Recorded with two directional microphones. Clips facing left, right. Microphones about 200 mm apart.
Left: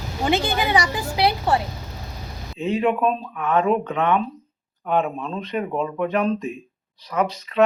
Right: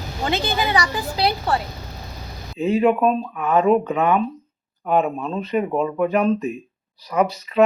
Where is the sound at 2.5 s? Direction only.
5° right (ahead or behind).